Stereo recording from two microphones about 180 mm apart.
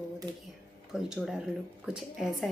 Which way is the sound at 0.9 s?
Centre (ahead or behind).